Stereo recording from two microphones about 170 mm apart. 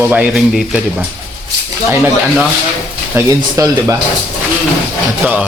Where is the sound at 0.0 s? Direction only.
10° right (ahead or behind).